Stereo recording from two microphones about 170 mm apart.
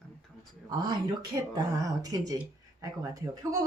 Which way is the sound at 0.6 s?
25° right (ahead or behind).